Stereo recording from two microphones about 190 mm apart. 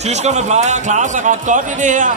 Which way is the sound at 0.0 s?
35° right (ahead or behind).